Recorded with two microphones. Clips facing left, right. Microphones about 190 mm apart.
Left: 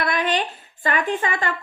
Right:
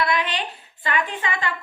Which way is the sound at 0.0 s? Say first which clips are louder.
Left 2 dB; 50° left (ahead or behind).